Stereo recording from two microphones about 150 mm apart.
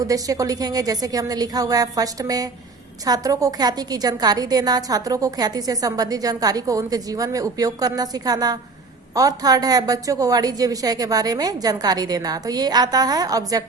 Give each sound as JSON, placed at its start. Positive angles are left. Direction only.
{"t": 0.0, "sound": "a woman's voice", "side_deg": -25}